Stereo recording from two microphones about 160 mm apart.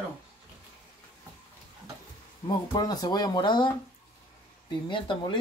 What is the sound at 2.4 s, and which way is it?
Speech, 25° left (ahead or behind).